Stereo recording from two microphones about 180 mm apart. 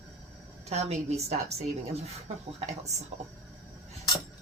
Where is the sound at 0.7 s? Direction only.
35° right (ahead or behind).